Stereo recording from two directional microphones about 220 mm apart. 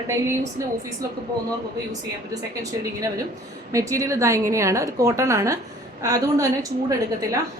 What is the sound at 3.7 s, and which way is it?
A woman's voice, 15° right (ahead or behind).